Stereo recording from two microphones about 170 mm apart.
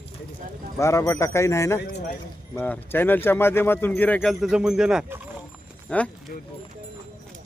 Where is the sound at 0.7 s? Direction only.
15° left (ahead or behind); by 5.2 s 5° right (ahead or behind).